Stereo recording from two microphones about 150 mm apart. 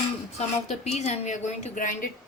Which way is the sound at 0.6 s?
50° left (ahead or behind).